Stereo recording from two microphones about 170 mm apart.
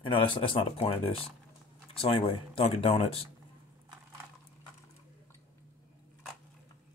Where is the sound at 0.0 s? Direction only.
30° left (ahead or behind).